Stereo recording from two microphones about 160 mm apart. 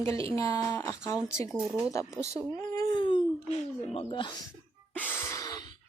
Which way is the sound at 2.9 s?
30° left (ahead or behind).